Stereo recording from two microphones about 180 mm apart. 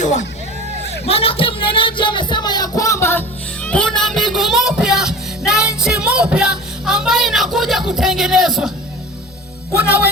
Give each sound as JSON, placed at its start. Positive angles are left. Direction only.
{"t": 0.0, "sound": "speech", "side_deg": 40}
{"t": 1.0, "sound": "music", "side_deg": 35}
{"t": 9.7, "sound": "speech", "side_deg": -5}